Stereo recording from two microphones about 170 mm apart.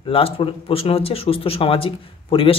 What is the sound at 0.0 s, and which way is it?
Speech, 30° left (ahead or behind).